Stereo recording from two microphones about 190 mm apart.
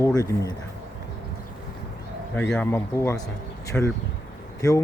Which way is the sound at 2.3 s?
10° left (ahead or behind).